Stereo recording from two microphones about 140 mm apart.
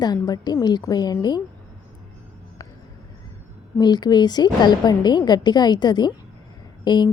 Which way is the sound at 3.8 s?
30° left (ahead or behind).